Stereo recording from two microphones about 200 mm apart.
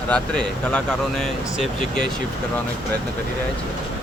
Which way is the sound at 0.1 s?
5° left (ahead or behind).